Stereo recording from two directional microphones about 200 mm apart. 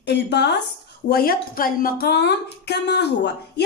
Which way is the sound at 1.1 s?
50° left (ahead or behind).